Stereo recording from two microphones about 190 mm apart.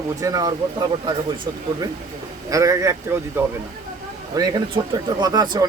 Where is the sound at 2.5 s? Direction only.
15° right (ahead or behind).